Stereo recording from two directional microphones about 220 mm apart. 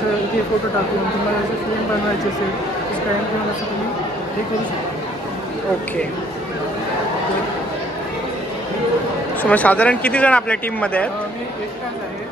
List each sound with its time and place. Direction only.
9.4 s speech: 5° left (ahead or behind)